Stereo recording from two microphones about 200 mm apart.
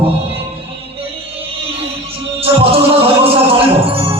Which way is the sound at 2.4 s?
30° right (ahead or behind).